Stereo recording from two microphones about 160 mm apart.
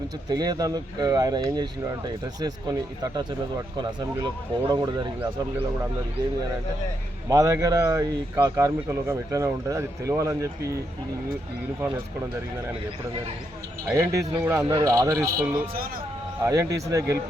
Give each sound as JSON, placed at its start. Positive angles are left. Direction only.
{"t": 0.3, "sound": "speech", "side_deg": -25}
{"t": 4.7, "sound": "speech", "side_deg": -25}
{"t": 7.3, "sound": "speech", "side_deg": -20}
{"t": 13.9, "sound": "speech", "side_deg": -20}
{"t": 15.6, "sound": "a woman's voice", "side_deg": -65}
{"t": 16.4, "sound": "speech", "side_deg": -20}